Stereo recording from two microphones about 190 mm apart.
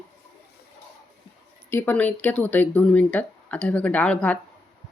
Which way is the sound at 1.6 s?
10° left (ahead or behind).